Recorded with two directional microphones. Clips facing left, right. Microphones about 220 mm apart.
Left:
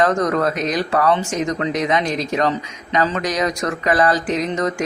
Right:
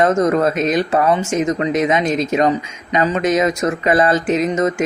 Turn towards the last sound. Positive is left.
turn(degrees=-20)  # may be behind; listen again after turning